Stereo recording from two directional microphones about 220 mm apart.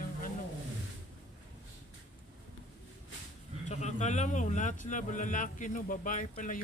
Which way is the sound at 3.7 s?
30° left (ahead or behind).